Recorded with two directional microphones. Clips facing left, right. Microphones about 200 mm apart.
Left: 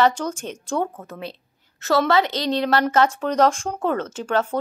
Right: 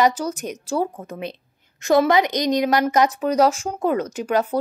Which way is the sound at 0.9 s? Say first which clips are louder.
Right 3 dB; 15° right (ahead or behind).